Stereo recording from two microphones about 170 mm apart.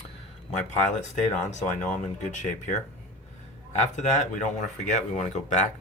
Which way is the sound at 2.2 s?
45° left (ahead or behind).